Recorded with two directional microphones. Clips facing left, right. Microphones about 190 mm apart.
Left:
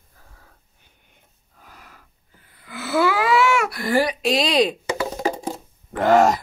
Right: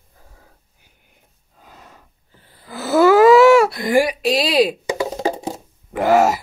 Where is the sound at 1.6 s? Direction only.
25° right (ahead or behind).